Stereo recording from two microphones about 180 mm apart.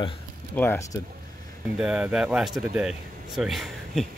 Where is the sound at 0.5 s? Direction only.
10° left (ahead or behind).